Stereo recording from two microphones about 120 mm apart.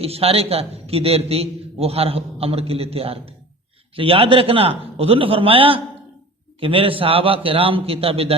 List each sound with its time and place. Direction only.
0.0 s a man's voice: 55° right (ahead or behind)